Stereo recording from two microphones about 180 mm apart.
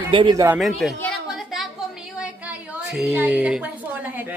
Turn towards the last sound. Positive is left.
turn(degrees=-10)  # may be behind; listen again after turning